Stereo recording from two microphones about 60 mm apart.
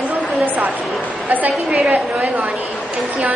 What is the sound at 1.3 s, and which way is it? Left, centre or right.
Speech, right.